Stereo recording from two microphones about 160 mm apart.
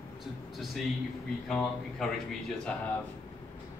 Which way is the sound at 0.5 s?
Centre (ahead or behind).